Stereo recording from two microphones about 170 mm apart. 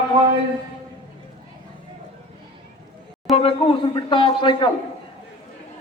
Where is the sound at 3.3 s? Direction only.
35° left (ahead or behind).